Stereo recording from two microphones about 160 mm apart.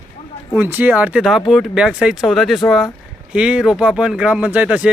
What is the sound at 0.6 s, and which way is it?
Speech, 10° right (ahead or behind).